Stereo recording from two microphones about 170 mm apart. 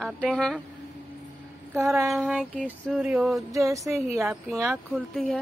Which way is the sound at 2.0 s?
Centre (ahead or behind).